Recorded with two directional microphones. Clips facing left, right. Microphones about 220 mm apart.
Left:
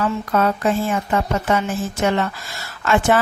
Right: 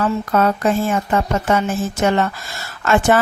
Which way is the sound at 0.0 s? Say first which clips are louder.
Right 2 dB; 45° right (ahead or behind).